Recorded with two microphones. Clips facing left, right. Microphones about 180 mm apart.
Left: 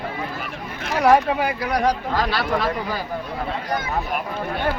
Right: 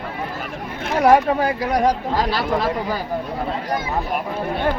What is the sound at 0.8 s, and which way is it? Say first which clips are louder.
Speech: right 2 dB; 25° right (ahead or behind).